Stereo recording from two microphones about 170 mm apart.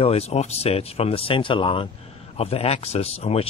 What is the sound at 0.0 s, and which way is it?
Speech, 35° left (ahead or behind).